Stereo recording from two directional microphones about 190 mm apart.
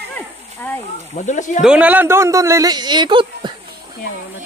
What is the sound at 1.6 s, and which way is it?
Speech, 5° right (ahead or behind).